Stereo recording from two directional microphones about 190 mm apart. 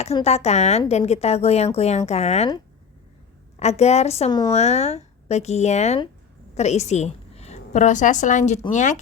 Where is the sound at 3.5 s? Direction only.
35° left (ahead or behind).